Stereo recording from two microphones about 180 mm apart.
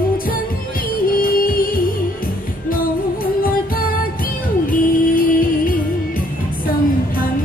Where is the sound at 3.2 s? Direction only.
55° left (ahead or behind).